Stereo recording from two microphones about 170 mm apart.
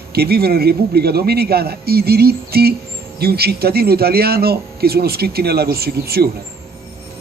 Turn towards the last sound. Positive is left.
turn(degrees=-65)  # may be behind; listen again after turning